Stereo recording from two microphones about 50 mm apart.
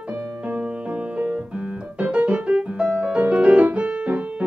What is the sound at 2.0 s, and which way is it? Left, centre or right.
Piano, right.